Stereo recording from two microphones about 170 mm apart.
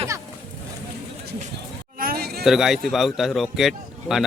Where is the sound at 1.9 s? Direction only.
60° right (ahead or behind).